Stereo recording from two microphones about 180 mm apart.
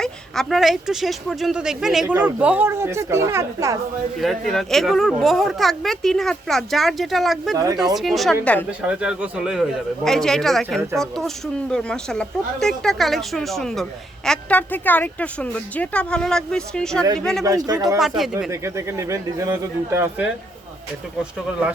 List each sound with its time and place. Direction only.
0.0 s speech: centre (ahead or behind); by 3.8 s 15° right (ahead or behind)
4.2 s speech: centre (ahead or behind)
7.5 s speech: 20° right (ahead or behind)
7.9 s speech: centre (ahead or behind)
8.8 s speech: 5° right (ahead or behind)
17.4 s speech: 20° right (ahead or behind)
18.0 s speech: 5° right (ahead or behind)